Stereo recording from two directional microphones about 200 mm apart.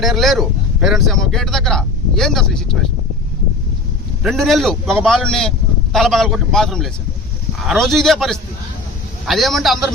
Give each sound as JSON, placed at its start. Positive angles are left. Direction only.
{"t": 0.0, "sound": "speech", "side_deg": 0}
{"t": 4.2, "sound": "speech", "side_deg": 0}